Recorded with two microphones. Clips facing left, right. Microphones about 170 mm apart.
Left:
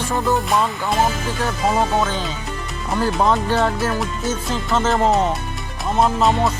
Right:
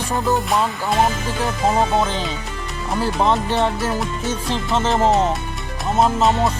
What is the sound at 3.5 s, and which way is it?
Music, 25° right (ahead or behind).